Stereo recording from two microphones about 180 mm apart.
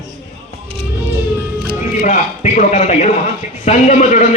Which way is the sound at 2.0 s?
45° left (ahead or behind).